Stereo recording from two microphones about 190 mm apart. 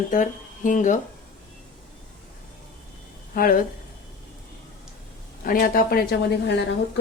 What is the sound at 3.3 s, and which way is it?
Speech, 50° left (ahead or behind).